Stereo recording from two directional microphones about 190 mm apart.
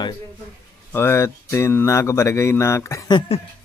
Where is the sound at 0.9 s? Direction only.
15° left (ahead or behind).